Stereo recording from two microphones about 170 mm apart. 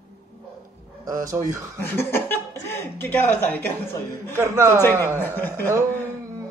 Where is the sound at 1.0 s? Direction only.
20° right (ahead or behind).